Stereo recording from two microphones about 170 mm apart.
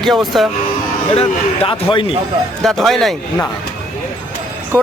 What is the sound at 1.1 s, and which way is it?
Speech, 30° left (ahead or behind).